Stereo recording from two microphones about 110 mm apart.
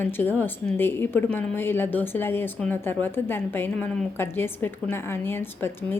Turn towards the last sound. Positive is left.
turn(degrees=20)  # may be behind; listen again after turning